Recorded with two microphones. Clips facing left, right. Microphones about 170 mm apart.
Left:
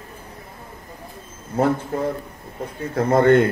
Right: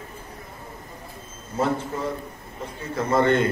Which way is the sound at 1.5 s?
55° left (ahead or behind).